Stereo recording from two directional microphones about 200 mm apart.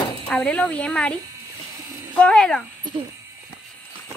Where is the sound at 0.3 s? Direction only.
5° left (ahead or behind).